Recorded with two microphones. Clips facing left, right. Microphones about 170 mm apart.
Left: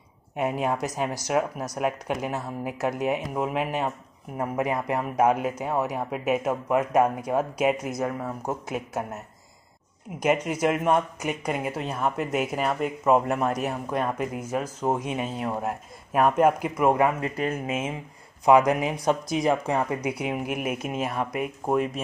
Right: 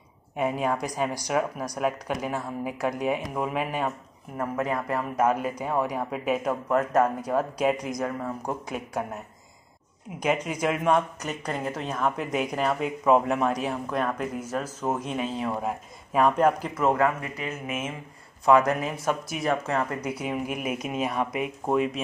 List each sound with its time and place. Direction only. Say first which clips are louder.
0.4 s speech: even; 10° left (ahead or behind)
10.2 s speech: left 3 dB; 10° left (ahead or behind)